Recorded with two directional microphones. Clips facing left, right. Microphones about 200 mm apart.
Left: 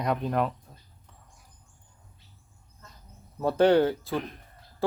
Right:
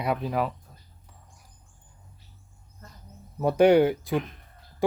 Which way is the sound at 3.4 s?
15° right (ahead or behind).